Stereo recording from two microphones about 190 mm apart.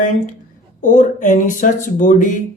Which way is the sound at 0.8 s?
40° left (ahead or behind).